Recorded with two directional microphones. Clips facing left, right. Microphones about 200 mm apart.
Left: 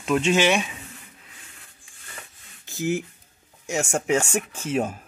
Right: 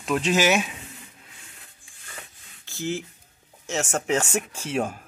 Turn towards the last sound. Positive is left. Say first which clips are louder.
# left 2 dB
turn(degrees=5)  # may be behind; listen again after turning